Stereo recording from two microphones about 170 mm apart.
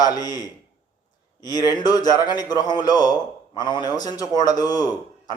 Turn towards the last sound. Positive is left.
turn(degrees=25)  # may be behind; listen again after turning